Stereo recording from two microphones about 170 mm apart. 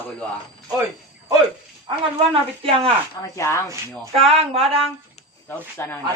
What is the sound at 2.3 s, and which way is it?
Speech, 30° right (ahead or behind).